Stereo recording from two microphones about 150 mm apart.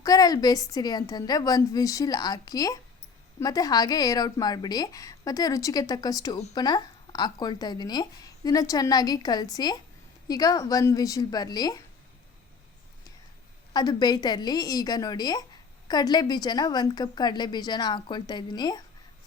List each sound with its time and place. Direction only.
0.0 s a woman's voice: 25° left (ahead or behind)
13.7 s a woman's voice: 25° left (ahead or behind)